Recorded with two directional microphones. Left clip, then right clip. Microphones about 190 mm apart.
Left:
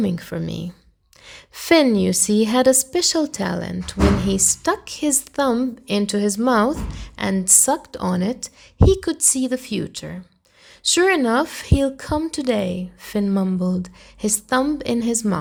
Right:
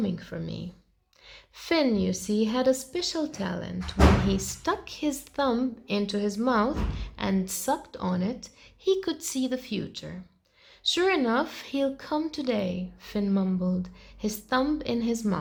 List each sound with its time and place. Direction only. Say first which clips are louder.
0.0 s a woman's voice: left 8 dB; 40° left (ahead or behind)
8.9 s a woman's voice: left 6 dB; 25° left (ahead or behind)